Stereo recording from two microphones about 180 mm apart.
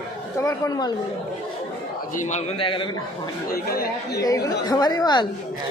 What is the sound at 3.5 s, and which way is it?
Speech, 55° left (ahead or behind).